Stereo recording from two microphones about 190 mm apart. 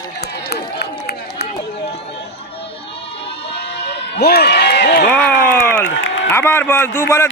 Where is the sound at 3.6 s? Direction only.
60° left (ahead or behind).